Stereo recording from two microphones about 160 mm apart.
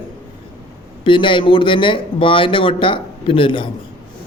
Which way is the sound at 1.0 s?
30° left (ahead or behind).